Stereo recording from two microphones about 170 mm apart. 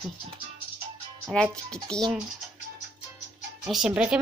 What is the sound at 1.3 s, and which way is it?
Speech, 5° left (ahead or behind).